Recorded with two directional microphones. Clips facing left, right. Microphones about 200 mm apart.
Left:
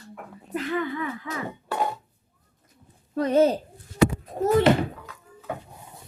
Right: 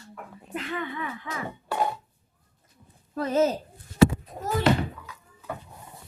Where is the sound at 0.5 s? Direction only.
35° left (ahead or behind).